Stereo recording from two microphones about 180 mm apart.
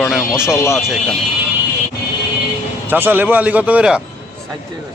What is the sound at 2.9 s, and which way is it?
A man's voice, 10° right (ahead or behind).